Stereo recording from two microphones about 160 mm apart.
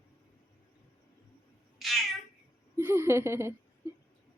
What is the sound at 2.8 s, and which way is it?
Speech, 15° right (ahead or behind).